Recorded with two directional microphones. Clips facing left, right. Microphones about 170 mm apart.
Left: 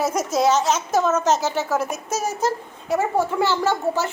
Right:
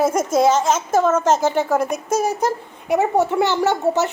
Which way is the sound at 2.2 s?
15° right (ahead or behind).